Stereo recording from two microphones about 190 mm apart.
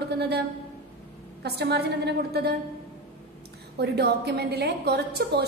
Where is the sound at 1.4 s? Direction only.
60° right (ahead or behind).